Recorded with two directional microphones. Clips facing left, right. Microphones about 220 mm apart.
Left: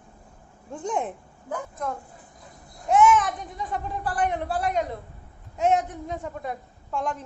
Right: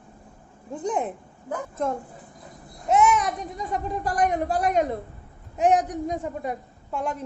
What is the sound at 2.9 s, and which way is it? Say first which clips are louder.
A woman's voice: left 1 dB; 40° right (ahead or behind).